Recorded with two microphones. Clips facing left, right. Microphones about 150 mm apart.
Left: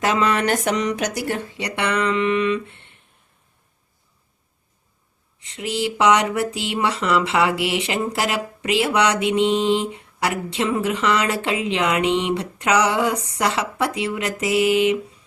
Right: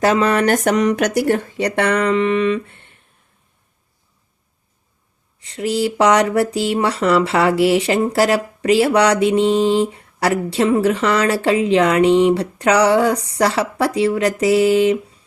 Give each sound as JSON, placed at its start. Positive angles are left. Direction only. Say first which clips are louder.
{"t": 0.0, "sound": "speech", "louder": "right 5 dB", "side_deg": -40}
{"t": 5.4, "sound": "speech", "louder": "right 6 dB", "side_deg": -40}